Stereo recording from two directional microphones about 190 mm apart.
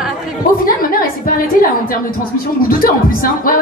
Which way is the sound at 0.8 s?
50° left (ahead or behind).